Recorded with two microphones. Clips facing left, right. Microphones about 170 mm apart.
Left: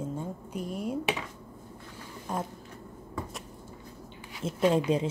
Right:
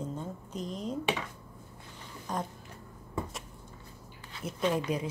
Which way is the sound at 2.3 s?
10° left (ahead or behind).